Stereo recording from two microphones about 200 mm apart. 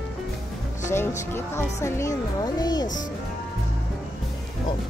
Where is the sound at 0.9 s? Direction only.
10° left (ahead or behind).